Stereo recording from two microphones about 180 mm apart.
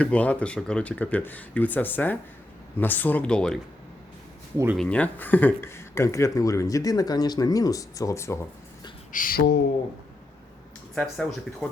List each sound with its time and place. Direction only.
0.0 s speech: 5° left (ahead or behind)
4.5 s speech: 15° right (ahead or behind)
4.8 s speech: 5° left (ahead or behind)
9.1 s speech: 55° left (ahead or behind)
10.9 s speech: 5° left (ahead or behind)